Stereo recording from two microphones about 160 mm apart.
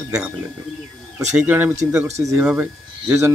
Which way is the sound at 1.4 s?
10° right (ahead or behind).